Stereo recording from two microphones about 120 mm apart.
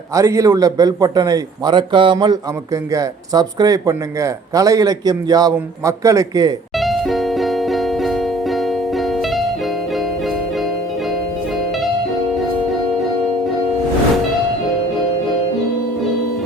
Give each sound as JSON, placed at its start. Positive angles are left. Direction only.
{"t": 0.1, "sound": "a man's voice", "side_deg": -25}
{"t": 6.7, "sound": "music", "side_deg": 0}